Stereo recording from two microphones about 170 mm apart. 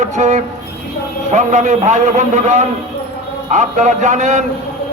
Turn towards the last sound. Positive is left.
turn(degrees=-45)  # may be behind; listen again after turning